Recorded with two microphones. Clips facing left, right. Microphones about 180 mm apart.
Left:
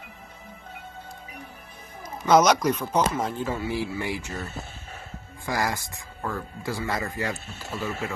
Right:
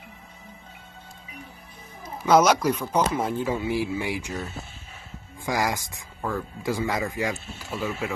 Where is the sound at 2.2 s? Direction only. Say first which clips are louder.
Even; 5° right (ahead or behind).